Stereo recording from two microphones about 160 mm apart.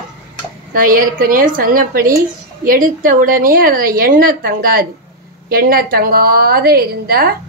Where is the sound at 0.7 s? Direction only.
60° right (ahead or behind).